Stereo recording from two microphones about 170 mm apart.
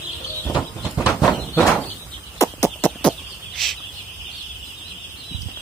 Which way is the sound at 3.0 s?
5° left (ahead or behind).